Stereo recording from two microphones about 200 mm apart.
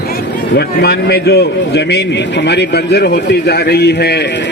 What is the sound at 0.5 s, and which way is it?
A man's voice, 55° left (ahead or behind).